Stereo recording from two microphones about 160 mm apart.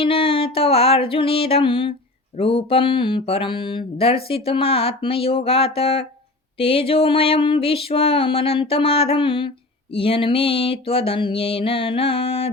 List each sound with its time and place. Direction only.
0.0 s music: 35° left (ahead or behind)
2.4 s mantra: 35° left (ahead or behind)